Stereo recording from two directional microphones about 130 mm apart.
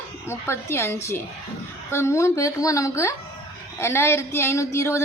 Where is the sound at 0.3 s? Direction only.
20° left (ahead or behind).